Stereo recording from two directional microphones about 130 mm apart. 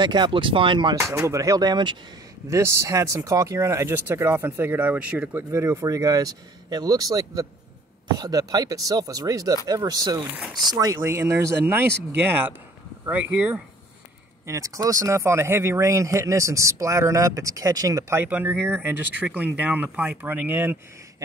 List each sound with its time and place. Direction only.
0.0 s speech: 35° right (ahead or behind)
0.9 s speech: 20° right (ahead or behind)
2.5 s speech: 25° right (ahead or behind)
13.1 s speech: 10° right (ahead or behind)
14.4 s speech: 25° right (ahead or behind)